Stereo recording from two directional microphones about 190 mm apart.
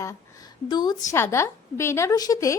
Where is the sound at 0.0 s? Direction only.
20° left (ahead or behind).